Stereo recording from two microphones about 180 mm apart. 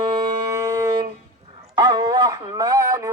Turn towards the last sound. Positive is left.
turn(degrees=-20)  # may be behind; listen again after turning